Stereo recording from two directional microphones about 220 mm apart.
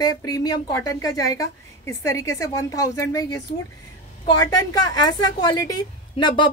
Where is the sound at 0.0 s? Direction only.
15° left (ahead or behind).